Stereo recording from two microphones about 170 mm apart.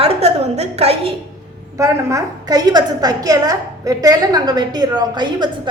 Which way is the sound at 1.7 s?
20° right (ahead or behind).